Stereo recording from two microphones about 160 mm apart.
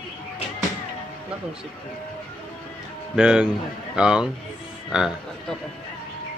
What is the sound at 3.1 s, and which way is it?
A man's voice, 5° right (ahead or behind).